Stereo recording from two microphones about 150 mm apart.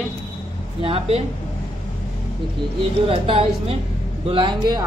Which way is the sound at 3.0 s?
40° right (ahead or behind).